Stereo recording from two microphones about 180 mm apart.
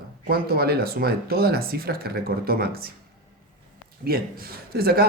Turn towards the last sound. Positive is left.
turn(degrees=-60)  # may be behind; listen again after turning